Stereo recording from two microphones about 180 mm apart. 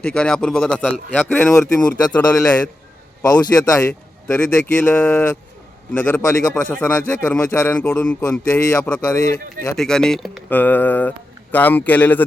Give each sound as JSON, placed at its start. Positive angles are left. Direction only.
{"t": 0.0, "sound": "a man's voice", "side_deg": 5}
{"t": 2.2, "sound": "a man's voice", "side_deg": 20}
{"t": 3.2, "sound": "a man's voice", "side_deg": 10}